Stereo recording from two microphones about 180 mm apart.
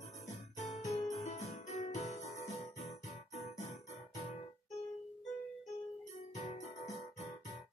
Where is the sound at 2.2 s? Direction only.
40° left (ahead or behind).